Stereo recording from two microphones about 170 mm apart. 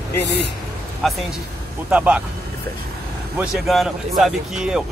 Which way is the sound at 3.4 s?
Centre (ahead or behind).